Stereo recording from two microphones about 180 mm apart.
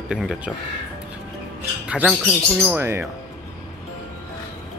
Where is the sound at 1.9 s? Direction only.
5° right (ahead or behind).